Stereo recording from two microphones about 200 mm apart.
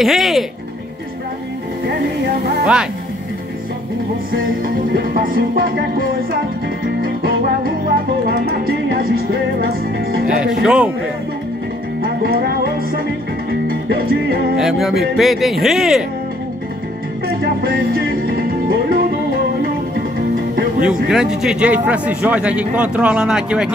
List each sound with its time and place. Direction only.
0.0 s a man's voice: centre (ahead or behind)
2.6 s a man's voice: 5° right (ahead or behind)
4.9 s music: 45° right (ahead or behind)
10.6 s a man's voice: 5° right (ahead or behind)
12.0 s music: 50° right (ahead or behind)
14.6 s a man's voice: centre (ahead or behind)
17.4 s music: 50° right (ahead or behind)
20.8 s a man's voice: 5° right (ahead or behind)